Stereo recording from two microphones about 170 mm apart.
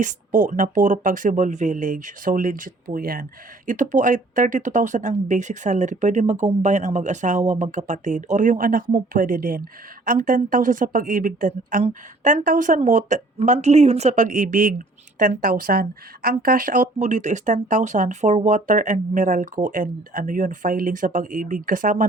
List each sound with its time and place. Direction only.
0.0 s speech: 50° right (ahead or behind)